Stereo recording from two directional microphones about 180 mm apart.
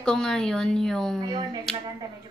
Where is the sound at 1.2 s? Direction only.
20° right (ahead or behind).